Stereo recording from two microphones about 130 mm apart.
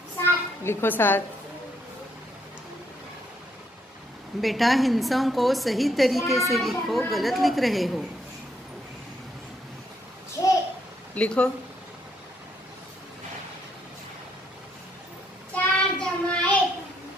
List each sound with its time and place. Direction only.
0.2 s a sound: 15° left (ahead or behind)
4.4 s a woman's voice: centre (ahead or behind)
11.1 s speech: 10° left (ahead or behind)
15.5 s child singing: 10° left (ahead or behind)